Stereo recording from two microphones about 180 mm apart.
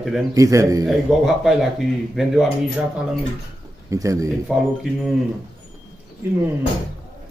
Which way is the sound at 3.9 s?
20° right (ahead or behind).